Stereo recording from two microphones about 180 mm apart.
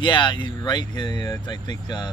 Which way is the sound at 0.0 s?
25° left (ahead or behind).